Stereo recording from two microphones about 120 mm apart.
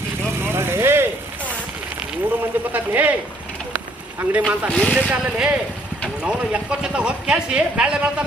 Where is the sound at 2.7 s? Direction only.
15° right (ahead or behind).